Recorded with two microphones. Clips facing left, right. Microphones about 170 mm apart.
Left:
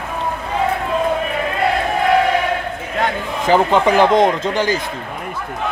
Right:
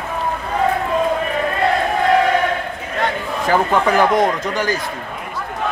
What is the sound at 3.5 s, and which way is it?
Speech, 20° left (ahead or behind).